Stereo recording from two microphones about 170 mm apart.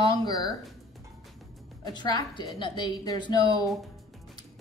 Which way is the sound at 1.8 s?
25° left (ahead or behind).